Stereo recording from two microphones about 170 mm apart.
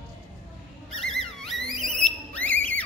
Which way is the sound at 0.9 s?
Centre (ahead or behind).